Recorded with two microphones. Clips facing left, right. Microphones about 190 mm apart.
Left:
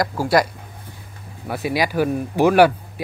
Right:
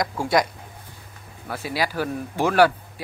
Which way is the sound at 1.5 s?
15° left (ahead or behind).